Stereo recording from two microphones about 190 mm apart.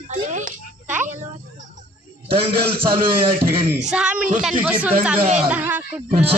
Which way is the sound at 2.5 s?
55° right (ahead or behind).